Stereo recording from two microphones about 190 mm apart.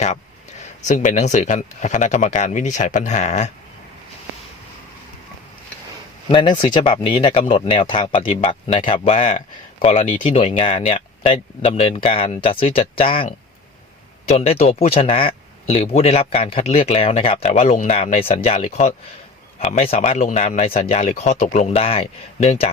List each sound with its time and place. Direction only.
0.6 s speech: 40° left (ahead or behind)
6.3 s speech: 25° left (ahead or behind)